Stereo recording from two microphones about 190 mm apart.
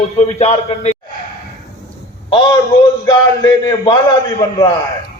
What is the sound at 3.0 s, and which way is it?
Speech, 20° left (ahead or behind).